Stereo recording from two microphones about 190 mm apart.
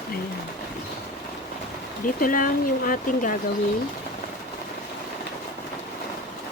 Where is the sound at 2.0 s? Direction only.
45° left (ahead or behind).